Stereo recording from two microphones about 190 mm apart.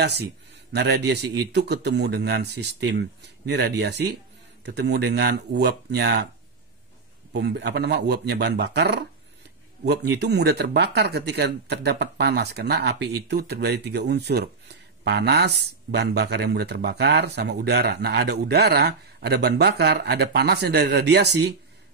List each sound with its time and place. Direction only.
0.7 s speech: 60° right (ahead or behind)
7.3 s speech: 65° right (ahead or behind)